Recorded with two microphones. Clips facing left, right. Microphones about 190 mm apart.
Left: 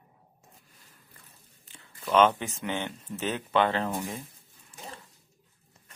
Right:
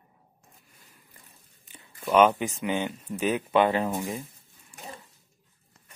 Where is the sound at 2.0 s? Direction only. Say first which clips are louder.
Right 2 dB; 10° right (ahead or behind).